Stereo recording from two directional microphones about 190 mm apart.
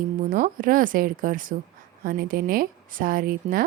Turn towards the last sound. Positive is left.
turn(degrees=-45)  # may be behind; listen again after turning